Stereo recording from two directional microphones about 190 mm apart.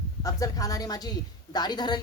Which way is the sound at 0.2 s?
20° left (ahead or behind).